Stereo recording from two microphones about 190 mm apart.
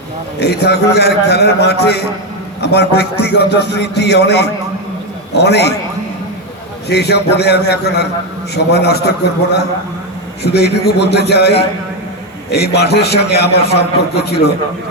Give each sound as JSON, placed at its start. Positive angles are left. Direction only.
{"t": 0.3, "sound": "a man's voice", "side_deg": 60}
{"t": 6.8, "sound": "a man's voice", "side_deg": 60}